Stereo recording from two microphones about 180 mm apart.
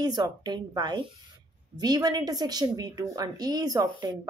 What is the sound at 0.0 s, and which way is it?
A woman's voice, 25° right (ahead or behind).